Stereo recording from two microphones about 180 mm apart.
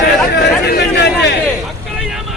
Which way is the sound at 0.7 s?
65° left (ahead or behind).